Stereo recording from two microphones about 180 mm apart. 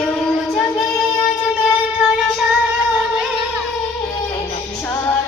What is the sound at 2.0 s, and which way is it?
Music, 5° right (ahead or behind).